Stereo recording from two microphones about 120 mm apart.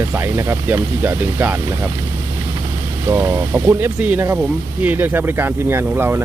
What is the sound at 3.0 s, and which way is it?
Speech, 20° right (ahead or behind).